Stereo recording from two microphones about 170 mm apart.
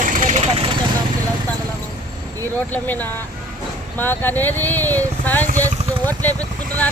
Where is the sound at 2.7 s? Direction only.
10° left (ahead or behind).